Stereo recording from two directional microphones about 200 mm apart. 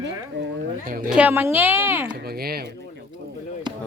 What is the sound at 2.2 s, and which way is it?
Speech, 50° right (ahead or behind).